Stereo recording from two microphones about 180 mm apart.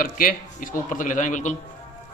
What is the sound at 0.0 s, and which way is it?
Speech, 50° left (ahead or behind).